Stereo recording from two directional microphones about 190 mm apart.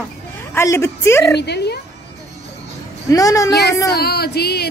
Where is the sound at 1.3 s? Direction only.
60° left (ahead or behind).